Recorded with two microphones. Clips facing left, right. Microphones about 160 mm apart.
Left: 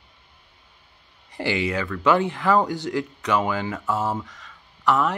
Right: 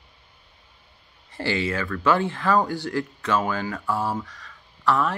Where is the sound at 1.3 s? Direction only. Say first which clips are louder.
Left 1 dB; 15° left (ahead or behind).